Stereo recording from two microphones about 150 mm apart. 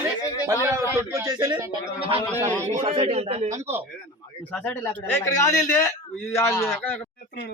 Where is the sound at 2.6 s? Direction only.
50° right (ahead or behind).